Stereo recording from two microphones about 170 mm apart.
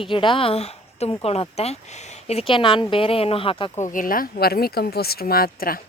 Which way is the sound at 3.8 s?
50° left (ahead or behind).